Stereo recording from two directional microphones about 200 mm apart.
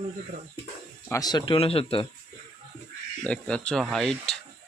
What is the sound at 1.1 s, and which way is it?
Speech, 20° left (ahead or behind).